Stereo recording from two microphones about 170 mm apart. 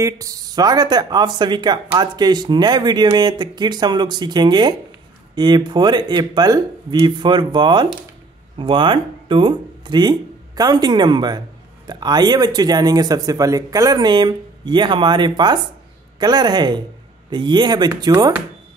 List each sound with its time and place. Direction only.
0.0 s speech: 20° right (ahead or behind)